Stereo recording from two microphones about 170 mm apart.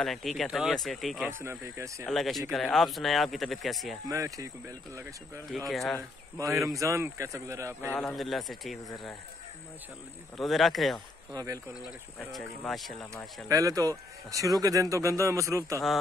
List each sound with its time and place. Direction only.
0.0 s speech: centre (ahead or behind)
1.4 s speech: 15° right (ahead or behind)
2.0 s speech: centre (ahead or behind)
4.1 s speech: 20° right (ahead or behind)
5.7 s speech: centre (ahead or behind)
6.3 s speech: 20° right (ahead or behind)
7.9 s speech: 10° left (ahead or behind)
8.2 s speech: centre (ahead or behind)
10.3 s speech: centre (ahead or behind)
11.3 s a man's voice: 20° right (ahead or behind)
12.2 s speech: centre (ahead or behind)
13.5 s a man's voice: 20° right (ahead or behind)